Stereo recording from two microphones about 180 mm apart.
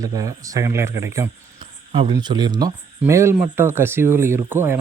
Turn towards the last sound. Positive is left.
turn(degrees=-10)  # may be behind; listen again after turning